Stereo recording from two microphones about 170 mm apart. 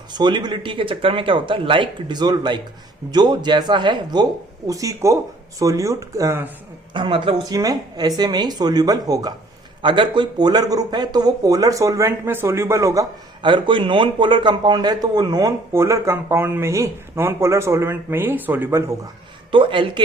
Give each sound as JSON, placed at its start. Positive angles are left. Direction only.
{"t": 0.1, "sound": "speech", "side_deg": -25}
{"t": 6.9, "sound": "speech", "side_deg": -30}
{"t": 19.5, "sound": "speech", "side_deg": -30}